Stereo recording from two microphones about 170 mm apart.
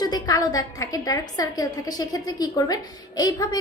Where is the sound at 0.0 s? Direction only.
20° left (ahead or behind).